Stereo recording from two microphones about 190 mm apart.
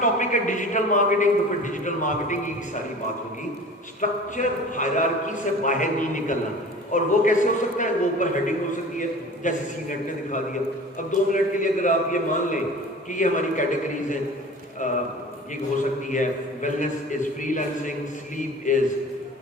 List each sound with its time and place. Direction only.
0.0 s a man's voice: 40° left (ahead or behind)
4.0 s a man's voice: 40° left (ahead or behind)
11.1 s a man's voice: 45° left (ahead or behind)
16.0 s a man's voice: 40° left (ahead or behind)